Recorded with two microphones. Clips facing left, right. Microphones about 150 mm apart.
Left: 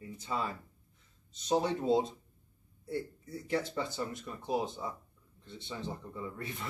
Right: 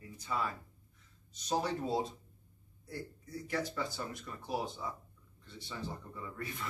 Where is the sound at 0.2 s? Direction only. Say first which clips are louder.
Left 1 dB; 25° left (ahead or behind).